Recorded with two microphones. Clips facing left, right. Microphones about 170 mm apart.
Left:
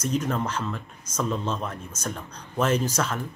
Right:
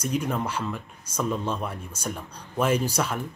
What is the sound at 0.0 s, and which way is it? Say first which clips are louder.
Speech: left 1 dB; 10° right (ahead or behind).